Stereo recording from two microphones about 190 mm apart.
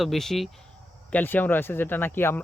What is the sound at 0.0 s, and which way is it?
Speech, centre (ahead or behind).